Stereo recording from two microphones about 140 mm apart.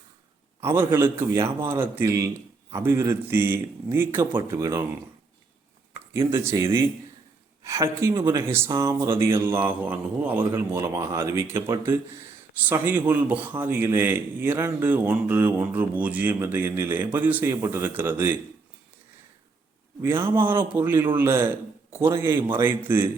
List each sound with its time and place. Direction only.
0.6 s a man's voice: 15° right (ahead or behind)
5.9 s a man's voice: 20° right (ahead or behind)
20.0 s a man's voice: 15° right (ahead or behind)